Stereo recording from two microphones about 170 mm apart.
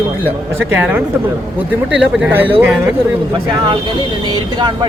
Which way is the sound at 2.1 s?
10° right (ahead or behind).